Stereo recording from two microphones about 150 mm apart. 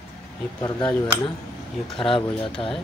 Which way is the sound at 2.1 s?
35° left (ahead or behind).